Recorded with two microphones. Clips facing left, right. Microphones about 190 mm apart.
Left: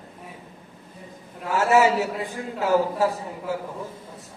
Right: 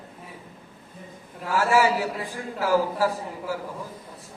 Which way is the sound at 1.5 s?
20° left (ahead or behind).